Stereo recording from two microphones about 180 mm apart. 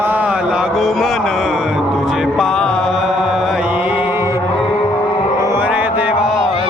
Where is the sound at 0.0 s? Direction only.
10° right (ahead or behind).